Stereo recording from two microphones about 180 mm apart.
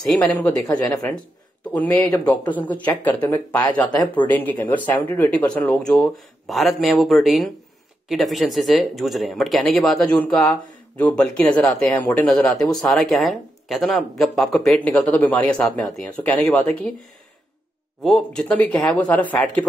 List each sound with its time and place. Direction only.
0.1 s speech: 10° left (ahead or behind)
0.6 s speech: 20° left (ahead or behind)
1.7 s speech: 10° left (ahead or behind)
18.0 s speech: 5° left (ahead or behind)